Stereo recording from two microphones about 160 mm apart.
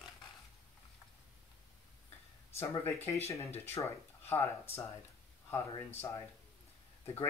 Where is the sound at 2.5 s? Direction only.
15° left (ahead or behind).